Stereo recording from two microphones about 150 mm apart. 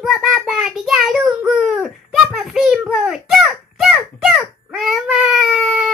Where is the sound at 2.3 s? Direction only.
Centre (ahead or behind).